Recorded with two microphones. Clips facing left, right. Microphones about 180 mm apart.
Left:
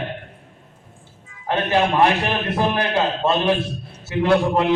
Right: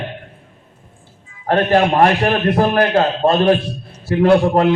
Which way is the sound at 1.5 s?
50° right (ahead or behind).